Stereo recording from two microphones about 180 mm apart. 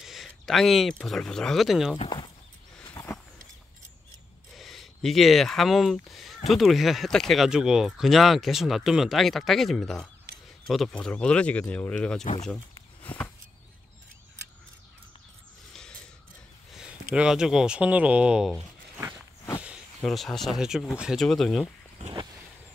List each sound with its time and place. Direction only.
0.0 s speech: centre (ahead or behind)
2.0 s speech: 25° left (ahead or behind)
2.9 s a sound: 15° left (ahead or behind)
4.6 s speech: centre (ahead or behind)
13.0 s a sound: 10° left (ahead or behind)
16.7 s speech: 5° right (ahead or behind)
20.0 s speech: centre (ahead or behind)